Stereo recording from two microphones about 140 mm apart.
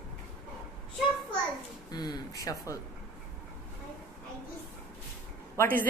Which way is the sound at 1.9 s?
30° left (ahead or behind).